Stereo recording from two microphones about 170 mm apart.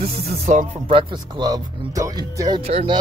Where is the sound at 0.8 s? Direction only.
30° right (ahead or behind).